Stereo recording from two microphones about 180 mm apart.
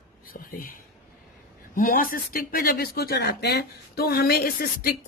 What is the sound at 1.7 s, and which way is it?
Speech, 50° left (ahead or behind).